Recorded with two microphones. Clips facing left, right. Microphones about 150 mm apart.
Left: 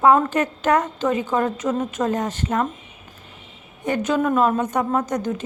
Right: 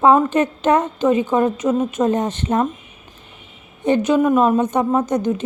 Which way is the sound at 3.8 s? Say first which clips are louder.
Right 5 dB; 20° right (ahead or behind).